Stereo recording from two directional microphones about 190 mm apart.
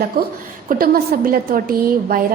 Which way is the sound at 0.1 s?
50° right (ahead or behind).